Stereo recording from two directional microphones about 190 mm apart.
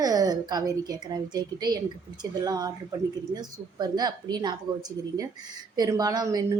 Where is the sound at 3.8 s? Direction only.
20° right (ahead or behind).